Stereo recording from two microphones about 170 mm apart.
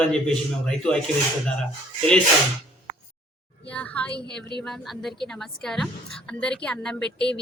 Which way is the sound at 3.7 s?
10° left (ahead or behind).